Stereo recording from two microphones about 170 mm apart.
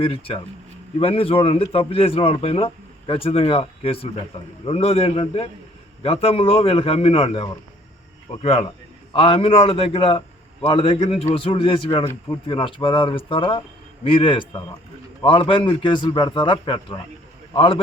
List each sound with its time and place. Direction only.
0.0 s a man's voice: 30° left (ahead or behind)